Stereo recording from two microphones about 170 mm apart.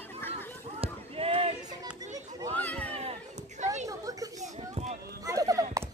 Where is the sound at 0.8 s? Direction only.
35° right (ahead or behind).